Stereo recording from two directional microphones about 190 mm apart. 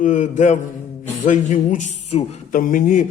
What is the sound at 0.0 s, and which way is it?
Speech, 40° left (ahead or behind).